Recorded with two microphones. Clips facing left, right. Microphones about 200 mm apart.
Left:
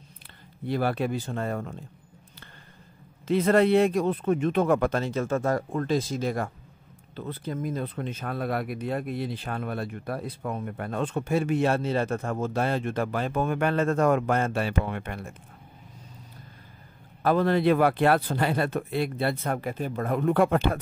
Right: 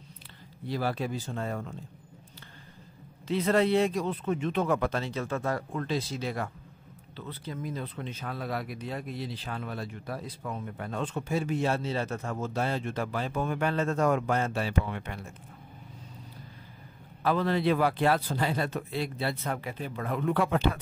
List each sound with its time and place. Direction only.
0.7 s speech: 60° left (ahead or behind)
3.3 s a man's voice: 50° left (ahead or behind)
17.2 s a man's voice: 50° left (ahead or behind)